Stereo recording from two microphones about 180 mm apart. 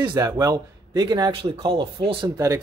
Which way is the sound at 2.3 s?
20° right (ahead or behind).